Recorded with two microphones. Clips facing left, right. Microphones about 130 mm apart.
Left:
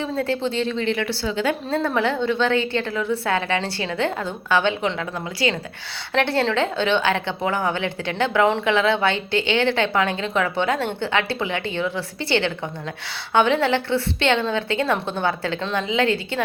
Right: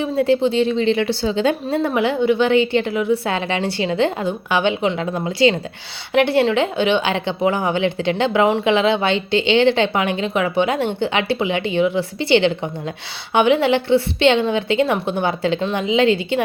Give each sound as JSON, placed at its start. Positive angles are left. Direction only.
{"t": 0.0, "sound": "a woman's voice", "side_deg": -15}